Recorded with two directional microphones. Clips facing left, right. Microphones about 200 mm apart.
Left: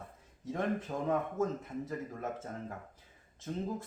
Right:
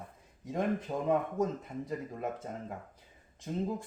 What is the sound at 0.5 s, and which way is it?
Speech, 15° right (ahead or behind).